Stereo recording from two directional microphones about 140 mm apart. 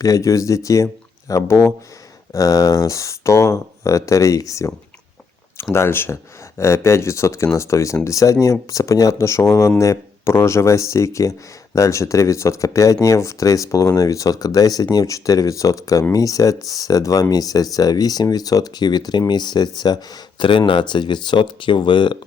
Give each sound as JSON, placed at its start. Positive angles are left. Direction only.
{"t": 0.0, "sound": "speech", "side_deg": 25}
{"t": 5.7, "sound": "speech", "side_deg": 15}